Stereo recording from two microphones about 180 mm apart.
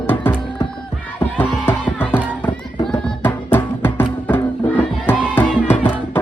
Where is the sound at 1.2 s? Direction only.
10° left (ahead or behind).